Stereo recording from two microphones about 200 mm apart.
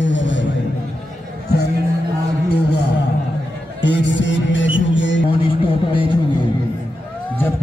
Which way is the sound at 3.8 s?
60° left (ahead or behind).